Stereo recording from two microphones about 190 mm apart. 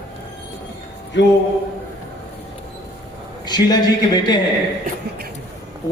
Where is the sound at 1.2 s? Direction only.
70° left (ahead or behind).